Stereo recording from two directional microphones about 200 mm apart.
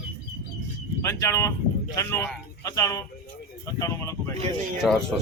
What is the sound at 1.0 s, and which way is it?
Speech, 15° left (ahead or behind).